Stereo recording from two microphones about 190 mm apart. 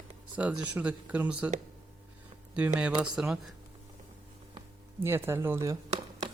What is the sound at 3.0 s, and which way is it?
Speech, 5° right (ahead or behind).